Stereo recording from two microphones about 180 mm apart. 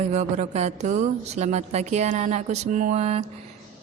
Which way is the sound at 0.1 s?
40° right (ahead or behind).